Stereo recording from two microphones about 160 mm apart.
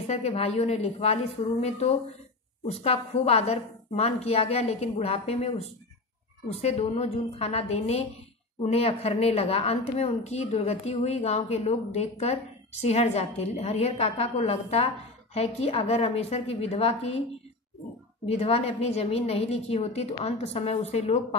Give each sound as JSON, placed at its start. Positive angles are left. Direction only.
{"t": 0.0, "sound": "a woman's voice", "side_deg": 40}
{"t": 18.3, "sound": "a woman's voice", "side_deg": 40}